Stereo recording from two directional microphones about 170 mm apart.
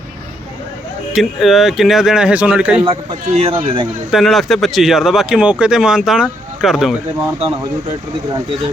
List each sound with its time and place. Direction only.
1.1 s speech: centre (ahead or behind)
2.8 s speech: 35° right (ahead or behind)
4.1 s speech: centre (ahead or behind)